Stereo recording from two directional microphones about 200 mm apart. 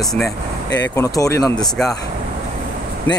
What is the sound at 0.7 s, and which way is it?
Speech, 15° left (ahead or behind).